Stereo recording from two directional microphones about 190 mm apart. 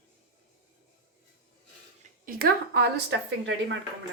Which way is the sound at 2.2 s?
55° right (ahead or behind).